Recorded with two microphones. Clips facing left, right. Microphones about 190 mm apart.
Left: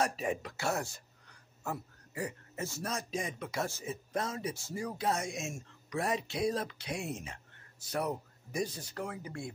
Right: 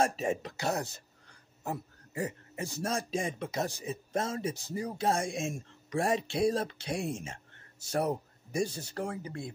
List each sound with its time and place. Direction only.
0.0 s a man's voice: 25° right (ahead or behind)
2.8 s speech: 30° right (ahead or behind)
3.6 s speech: 20° right (ahead or behind)